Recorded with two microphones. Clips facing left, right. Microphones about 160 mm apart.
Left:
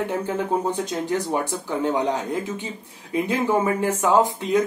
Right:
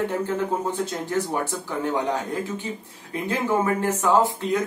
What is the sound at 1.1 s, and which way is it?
Speech, 15° left (ahead or behind).